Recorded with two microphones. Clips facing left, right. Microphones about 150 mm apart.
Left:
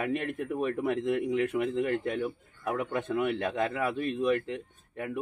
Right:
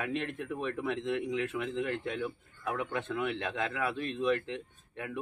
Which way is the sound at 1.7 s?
45° left (ahead or behind).